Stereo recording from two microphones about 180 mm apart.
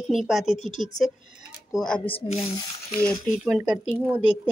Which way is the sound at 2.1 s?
30° left (ahead or behind).